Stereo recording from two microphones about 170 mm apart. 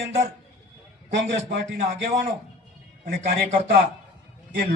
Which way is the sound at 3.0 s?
65° right (ahead or behind).